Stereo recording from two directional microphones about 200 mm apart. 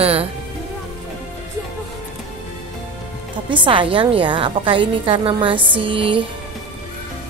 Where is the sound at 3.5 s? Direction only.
25° right (ahead or behind).